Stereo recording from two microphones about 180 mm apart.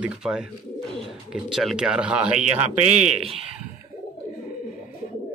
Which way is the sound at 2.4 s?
40° right (ahead or behind).